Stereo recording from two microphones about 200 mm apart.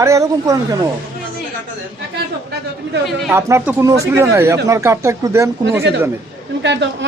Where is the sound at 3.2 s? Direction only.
10° right (ahead or behind).